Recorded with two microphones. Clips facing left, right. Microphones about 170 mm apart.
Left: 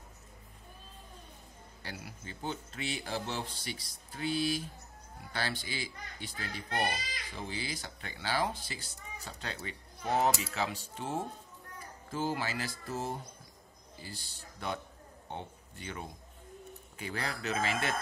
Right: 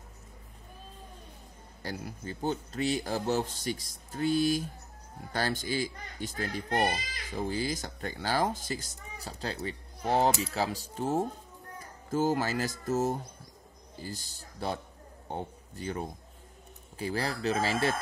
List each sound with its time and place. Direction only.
1.8 s a child's voice: 40° right (ahead or behind)